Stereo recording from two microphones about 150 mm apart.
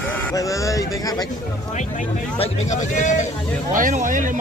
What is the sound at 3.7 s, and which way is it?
Speech, 60° right (ahead or behind).